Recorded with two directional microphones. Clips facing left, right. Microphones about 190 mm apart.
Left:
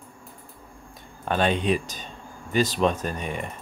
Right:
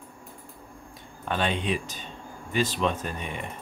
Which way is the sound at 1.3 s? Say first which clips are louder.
Left 5 dB; 45° left (ahead or behind).